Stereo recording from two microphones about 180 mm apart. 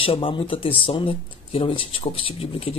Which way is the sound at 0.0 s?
30° left (ahead or behind).